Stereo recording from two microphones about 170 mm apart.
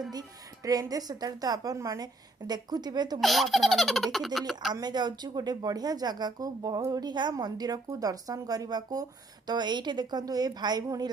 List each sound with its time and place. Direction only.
0.1 s speech: 20° right (ahead or behind)
3.2 s a child's voice: centre (ahead or behind)
4.7 s speech: 25° right (ahead or behind)